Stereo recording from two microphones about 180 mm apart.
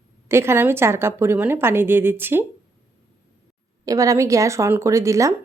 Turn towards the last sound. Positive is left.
turn(degrees=-15)  # may be behind; listen again after turning